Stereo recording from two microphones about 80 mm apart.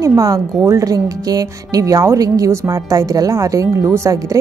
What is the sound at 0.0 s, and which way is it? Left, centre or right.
Speech, right.